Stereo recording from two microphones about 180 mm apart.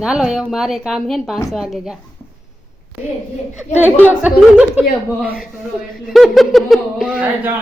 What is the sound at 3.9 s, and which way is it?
Speech, 10° left (ahead or behind).